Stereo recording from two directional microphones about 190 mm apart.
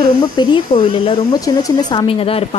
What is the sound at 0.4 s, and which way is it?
Speech, 25° left (ahead or behind).